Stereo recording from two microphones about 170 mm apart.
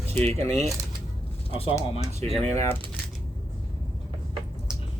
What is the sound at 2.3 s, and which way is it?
Speech, 40° right (ahead or behind).